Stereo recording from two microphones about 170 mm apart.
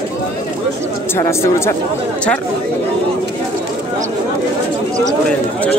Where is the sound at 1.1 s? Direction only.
15° left (ahead or behind).